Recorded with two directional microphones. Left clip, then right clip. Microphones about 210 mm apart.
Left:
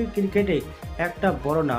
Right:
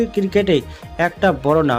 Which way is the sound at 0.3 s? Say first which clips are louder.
Right 6 dB; 40° right (ahead or behind).